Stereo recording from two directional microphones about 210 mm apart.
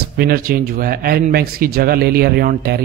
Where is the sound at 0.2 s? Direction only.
45° right (ahead or behind).